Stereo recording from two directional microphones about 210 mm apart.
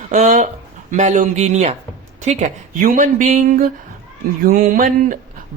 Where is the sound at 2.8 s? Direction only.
40° right (ahead or behind).